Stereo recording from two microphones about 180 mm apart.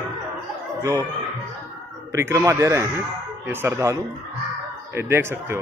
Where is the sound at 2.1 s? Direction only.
15° right (ahead or behind).